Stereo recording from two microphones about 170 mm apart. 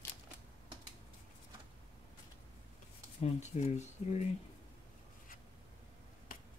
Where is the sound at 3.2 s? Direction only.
40° left (ahead or behind).